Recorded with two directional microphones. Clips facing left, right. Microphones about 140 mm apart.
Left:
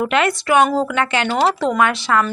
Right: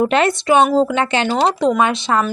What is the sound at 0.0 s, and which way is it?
Speech, 30° right (ahead or behind).